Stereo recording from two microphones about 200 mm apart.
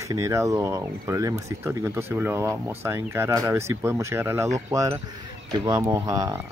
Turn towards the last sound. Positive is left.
turn(degrees=-15)  # may be behind; listen again after turning